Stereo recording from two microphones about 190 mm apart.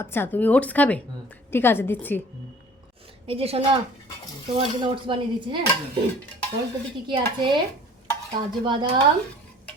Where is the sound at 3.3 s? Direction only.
30° right (ahead or behind).